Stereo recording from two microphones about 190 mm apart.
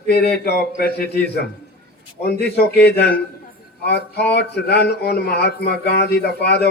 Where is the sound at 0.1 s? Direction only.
60° left (ahead or behind).